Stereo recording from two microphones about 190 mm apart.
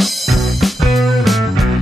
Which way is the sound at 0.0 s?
Centre (ahead or behind).